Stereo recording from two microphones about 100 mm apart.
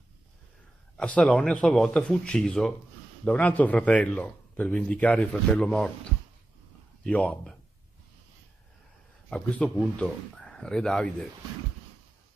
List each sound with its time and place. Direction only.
0.9 s speech: 10° left (ahead or behind)
7.0 s speech: 15° left (ahead or behind)
9.3 s speech: 10° left (ahead or behind)